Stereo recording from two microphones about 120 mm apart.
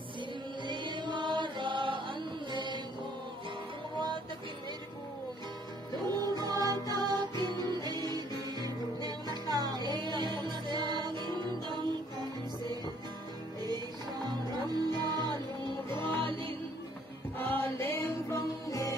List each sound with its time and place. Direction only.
0.7 s music: 40° right (ahead or behind)
6.0 s music: 35° right (ahead or behind)
14.9 s music: 35° right (ahead or behind)
15.9 s music: 15° left (ahead or behind)
17.4 s music: 15° left (ahead or behind)